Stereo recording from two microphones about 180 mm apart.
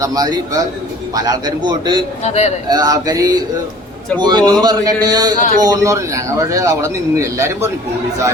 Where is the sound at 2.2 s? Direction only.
40° left (ahead or behind).